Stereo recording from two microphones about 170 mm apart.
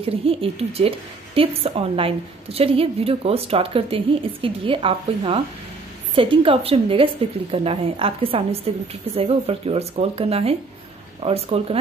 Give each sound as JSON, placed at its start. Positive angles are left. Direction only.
{"t": 0.0, "sound": "a woman's voice", "side_deg": -35}